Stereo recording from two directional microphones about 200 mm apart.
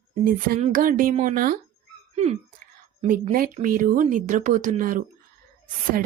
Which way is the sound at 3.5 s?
40° right (ahead or behind).